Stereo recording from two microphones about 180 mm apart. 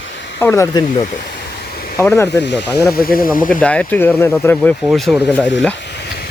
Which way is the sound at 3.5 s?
5° left (ahead or behind).